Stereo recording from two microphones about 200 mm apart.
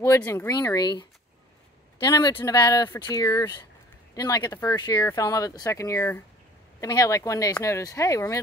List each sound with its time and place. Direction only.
0.0 s speech: 10° left (ahead or behind)